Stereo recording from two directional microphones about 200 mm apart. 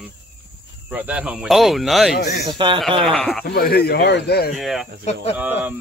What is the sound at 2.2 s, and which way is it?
Speech, 55° left (ahead or behind).